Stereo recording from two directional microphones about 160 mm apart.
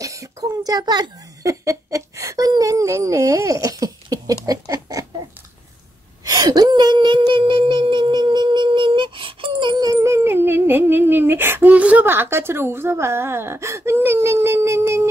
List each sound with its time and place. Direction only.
0.0 s giggle: 20° right (ahead or behind)
4.5 s rodents: 25° right (ahead or behind)
6.2 s a sound: 20° right (ahead or behind)